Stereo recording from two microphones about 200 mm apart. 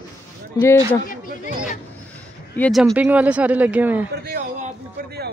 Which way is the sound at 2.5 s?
5° left (ahead or behind).